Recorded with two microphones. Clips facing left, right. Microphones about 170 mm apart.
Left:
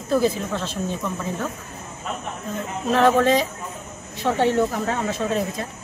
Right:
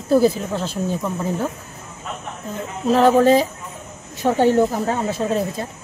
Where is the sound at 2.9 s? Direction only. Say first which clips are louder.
Right 4 dB; 35° right (ahead or behind).